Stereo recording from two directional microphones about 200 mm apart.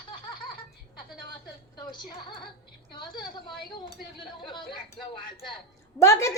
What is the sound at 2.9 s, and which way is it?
A woman's voice, 20° left (ahead or behind).